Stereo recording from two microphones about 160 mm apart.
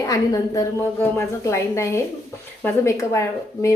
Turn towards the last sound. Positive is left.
turn(degrees=15)  # may be behind; listen again after turning